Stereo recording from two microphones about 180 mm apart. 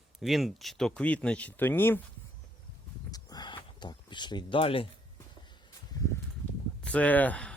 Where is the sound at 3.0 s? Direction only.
20° left (ahead or behind).